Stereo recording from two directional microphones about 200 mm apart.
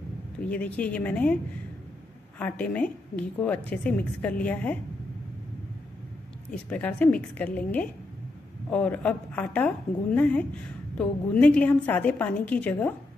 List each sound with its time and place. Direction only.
0.4 s a woman's voice: 5° left (ahead or behind)
6.5 s a woman's voice: 5° left (ahead or behind)